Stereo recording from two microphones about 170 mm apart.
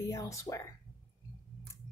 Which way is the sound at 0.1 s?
20° left (ahead or behind).